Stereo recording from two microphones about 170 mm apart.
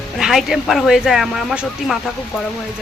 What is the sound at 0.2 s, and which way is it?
Speech, centre (ahead or behind).